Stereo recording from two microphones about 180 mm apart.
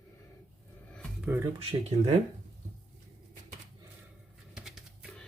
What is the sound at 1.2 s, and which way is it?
Speech, 10° right (ahead or behind).